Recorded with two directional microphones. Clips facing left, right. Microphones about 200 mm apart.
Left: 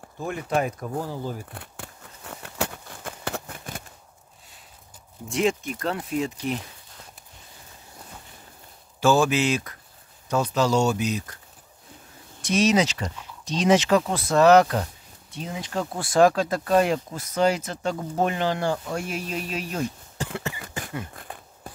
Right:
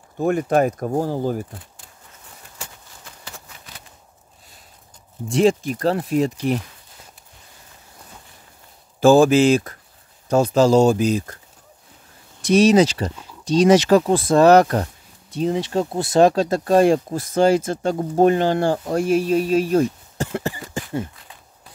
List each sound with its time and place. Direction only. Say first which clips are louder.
0.2 s speech: right 8 dB; 50° right (ahead or behind)
1.5 s a sound: left 2 dB; 65° left (ahead or behind); by 3.8 s 50° left (ahead or behind)
5.3 s speech: right 7 dB; 35° right (ahead or behind)
9.0 s speech: right 8 dB; 35° right (ahead or behind)
12.4 s speech: right 7 dB; 35° right (ahead or behind)
14.6 s speech: right 4 dB; 45° right (ahead or behind)
15.7 s speech: right 6 dB; 25° right (ahead or behind)
17.6 s speech: right 7 dB; 50° right (ahead or behind)
17.9 s speech: right 11 dB; 35° right (ahead or behind)
21.1 s speech: left 7 dB; 55° left (ahead or behind)